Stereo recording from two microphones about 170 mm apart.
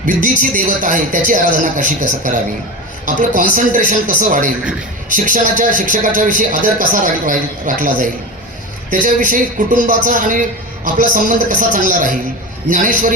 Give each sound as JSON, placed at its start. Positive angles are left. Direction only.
{"t": 0.0, "sound": "a man's voice", "side_deg": -50}